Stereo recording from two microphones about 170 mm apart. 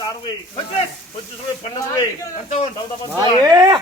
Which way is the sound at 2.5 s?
45° left (ahead or behind).